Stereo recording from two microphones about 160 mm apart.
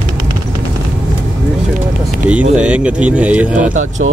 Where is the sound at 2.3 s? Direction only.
10° right (ahead or behind).